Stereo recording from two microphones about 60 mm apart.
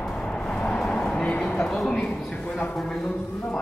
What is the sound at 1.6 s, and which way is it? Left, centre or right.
A man's voice, centre.